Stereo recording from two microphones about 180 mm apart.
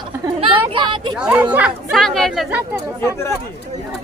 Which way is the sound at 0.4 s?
30° right (ahead or behind).